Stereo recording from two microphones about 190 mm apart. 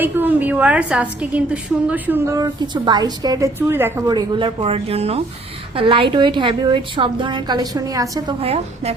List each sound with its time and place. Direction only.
0.0 s a woman's voice: 10° right (ahead or behind)
8.4 s a woman's voice: 30° right (ahead or behind)